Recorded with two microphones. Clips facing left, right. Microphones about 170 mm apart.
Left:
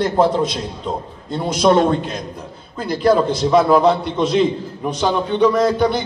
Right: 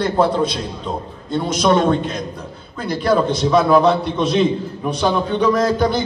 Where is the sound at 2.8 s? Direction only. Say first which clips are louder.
Left 2 dB; 25° left (ahead or behind).